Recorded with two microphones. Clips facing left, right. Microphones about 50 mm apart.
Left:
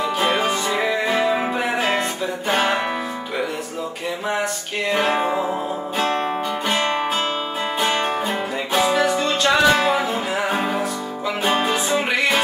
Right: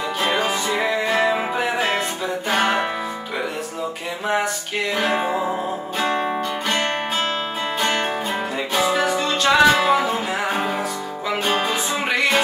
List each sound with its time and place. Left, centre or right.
0.3 s music: centre
4.9 s music: centre
7.8 s music: centre